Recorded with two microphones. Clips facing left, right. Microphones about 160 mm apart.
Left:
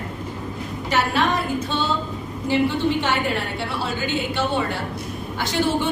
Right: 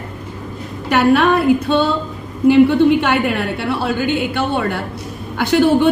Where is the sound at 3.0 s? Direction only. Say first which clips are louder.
Right 6 dB; 60° right (ahead or behind).